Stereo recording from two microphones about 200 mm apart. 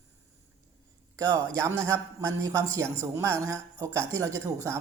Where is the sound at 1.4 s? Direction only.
15° right (ahead or behind).